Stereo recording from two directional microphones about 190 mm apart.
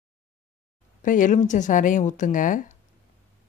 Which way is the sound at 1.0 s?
45° left (ahead or behind).